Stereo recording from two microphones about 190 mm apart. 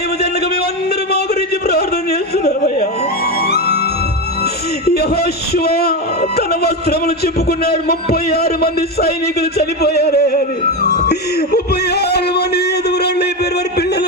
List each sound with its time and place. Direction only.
0.2 s a sound: 55° left (ahead or behind)
3.4 s music: 55° left (ahead or behind)
4.9 s speech: 55° left (ahead or behind)
10.8 s music: 60° left (ahead or behind)